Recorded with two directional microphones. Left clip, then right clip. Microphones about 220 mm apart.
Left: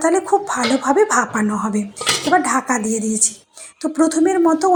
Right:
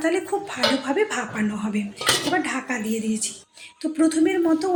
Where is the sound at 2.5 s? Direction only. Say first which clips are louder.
Left 9 dB; 10° left (ahead or behind).